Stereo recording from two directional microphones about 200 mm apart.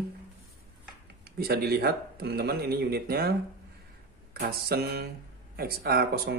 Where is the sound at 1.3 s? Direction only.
50° right (ahead or behind).